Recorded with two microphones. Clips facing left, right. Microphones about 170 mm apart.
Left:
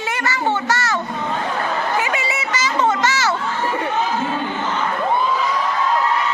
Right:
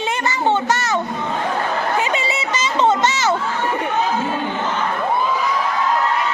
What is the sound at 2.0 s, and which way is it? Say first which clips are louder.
Chatter: right 2 dB; 20° right (ahead or behind).